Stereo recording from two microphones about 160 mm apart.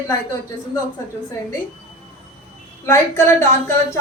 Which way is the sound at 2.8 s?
15° left (ahead or behind).